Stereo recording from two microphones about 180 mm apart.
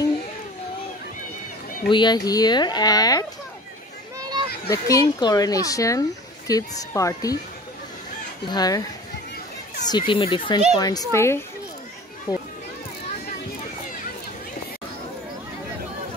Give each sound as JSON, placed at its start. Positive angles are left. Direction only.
{"t": 1.9, "sound": "speech", "side_deg": 25}
{"t": 4.2, "sound": "children playing", "side_deg": -25}
{"t": 4.6, "sound": "speech", "side_deg": 20}
{"t": 8.5, "sound": "speech", "side_deg": 20}
{"t": 9.8, "sound": "a child's voice", "side_deg": 25}